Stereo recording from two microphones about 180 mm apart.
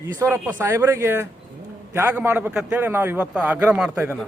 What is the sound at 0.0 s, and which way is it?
A man's voice, 15° right (ahead or behind).